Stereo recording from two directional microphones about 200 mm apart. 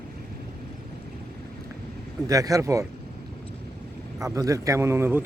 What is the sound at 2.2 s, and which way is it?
Speech, 20° right (ahead or behind).